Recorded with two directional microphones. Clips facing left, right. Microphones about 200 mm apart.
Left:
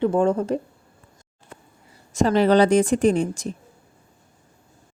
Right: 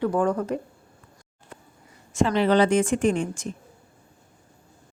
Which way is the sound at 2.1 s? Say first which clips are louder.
Left 3 dB; 40° left (ahead or behind).